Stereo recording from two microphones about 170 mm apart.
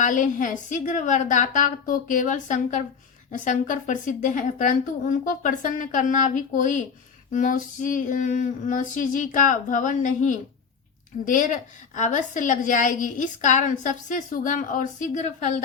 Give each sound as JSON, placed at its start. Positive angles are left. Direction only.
{"t": 0.0, "sound": "a woman's voice", "side_deg": 50}